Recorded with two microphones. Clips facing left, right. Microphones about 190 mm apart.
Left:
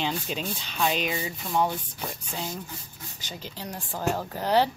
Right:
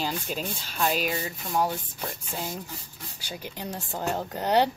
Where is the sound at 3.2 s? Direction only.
10° right (ahead or behind).